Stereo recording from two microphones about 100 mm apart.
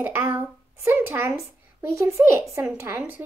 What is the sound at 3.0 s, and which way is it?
Speech, 20° right (ahead or behind).